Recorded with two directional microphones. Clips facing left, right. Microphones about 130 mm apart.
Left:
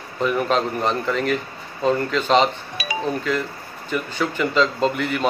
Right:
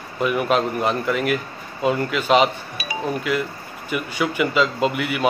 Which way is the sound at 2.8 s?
90° left.